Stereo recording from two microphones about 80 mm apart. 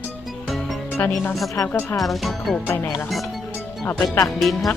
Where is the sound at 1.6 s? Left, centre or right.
Left.